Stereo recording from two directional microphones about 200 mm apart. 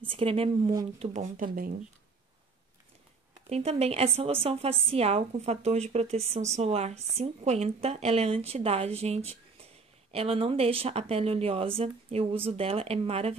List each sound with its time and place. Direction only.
0.1 s speech: 25° right (ahead or behind)
1.1 s speech: 40° right (ahead or behind)
3.4 s speech: 30° right (ahead or behind)